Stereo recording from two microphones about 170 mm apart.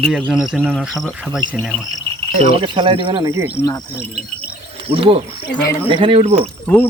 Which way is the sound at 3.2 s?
15° right (ahead or behind).